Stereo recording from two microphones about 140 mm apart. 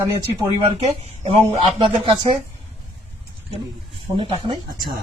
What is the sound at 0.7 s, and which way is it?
Speech, 45° right (ahead or behind).